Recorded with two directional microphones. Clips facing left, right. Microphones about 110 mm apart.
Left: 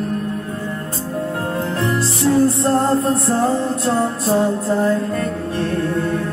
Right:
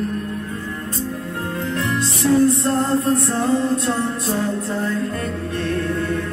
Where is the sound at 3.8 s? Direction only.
30° left (ahead or behind).